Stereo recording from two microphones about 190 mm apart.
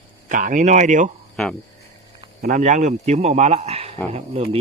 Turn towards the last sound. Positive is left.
turn(degrees=-30)  # may be behind; listen again after turning